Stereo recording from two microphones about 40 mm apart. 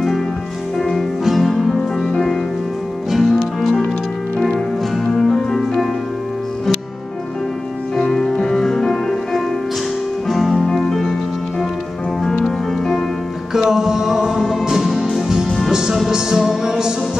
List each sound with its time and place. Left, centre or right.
0.7 s music: centre
1.8 s music: centre
5.0 s music: centre
8.0 s music: centre
12.4 s music: centre
13.5 s music: centre